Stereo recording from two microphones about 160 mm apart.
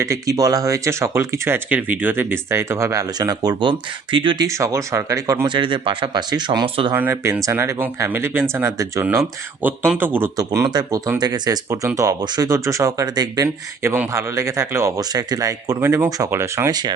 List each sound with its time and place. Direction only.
0.0 s speech: 20° right (ahead or behind)
4.4 s speech: 20° right (ahead or behind)
6.9 s speech: 15° right (ahead or behind)